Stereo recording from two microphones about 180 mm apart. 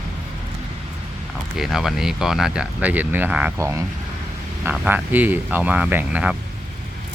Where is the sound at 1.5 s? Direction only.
Centre (ahead or behind).